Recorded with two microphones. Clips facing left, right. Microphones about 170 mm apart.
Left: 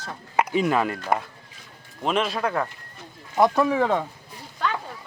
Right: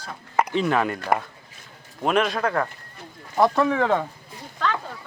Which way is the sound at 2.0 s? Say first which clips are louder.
Right 2 dB; centre (ahead or behind).